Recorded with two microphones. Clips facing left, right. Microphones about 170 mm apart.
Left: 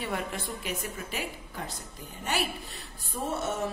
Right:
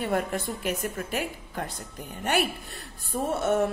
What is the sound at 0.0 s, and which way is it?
A woman's voice, 50° right (ahead or behind).